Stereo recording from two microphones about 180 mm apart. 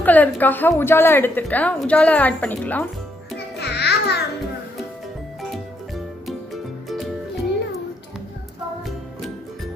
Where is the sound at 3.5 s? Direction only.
65° left (ahead or behind).